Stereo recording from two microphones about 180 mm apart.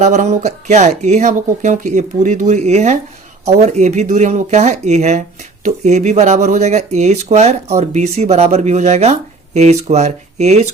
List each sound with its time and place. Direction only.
0.0 s speech: 40° right (ahead or behind)